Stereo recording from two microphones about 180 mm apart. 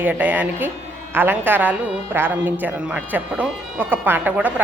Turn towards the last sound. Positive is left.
turn(degrees=-10)  # may be behind; listen again after turning